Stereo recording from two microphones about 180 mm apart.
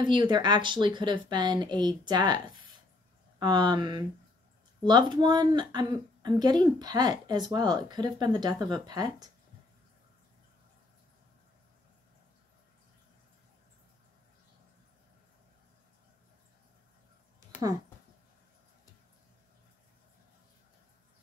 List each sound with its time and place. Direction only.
0.0 s a woman's voice: 25° right (ahead or behind)